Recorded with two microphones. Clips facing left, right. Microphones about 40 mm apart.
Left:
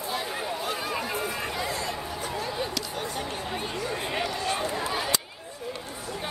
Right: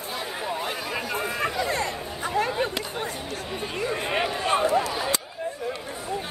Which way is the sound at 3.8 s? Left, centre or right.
Right.